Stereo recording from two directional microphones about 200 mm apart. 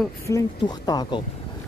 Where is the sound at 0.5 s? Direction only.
20° left (ahead or behind).